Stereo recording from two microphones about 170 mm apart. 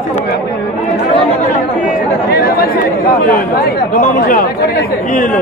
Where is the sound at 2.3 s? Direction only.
65° left (ahead or behind); by 5.3 s 50° left (ahead or behind).